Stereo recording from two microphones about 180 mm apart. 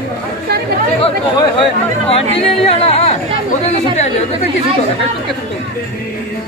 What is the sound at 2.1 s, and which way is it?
Speech, 30° left (ahead or behind).